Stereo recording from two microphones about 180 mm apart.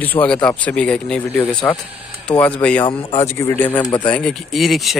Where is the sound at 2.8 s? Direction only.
30° left (ahead or behind).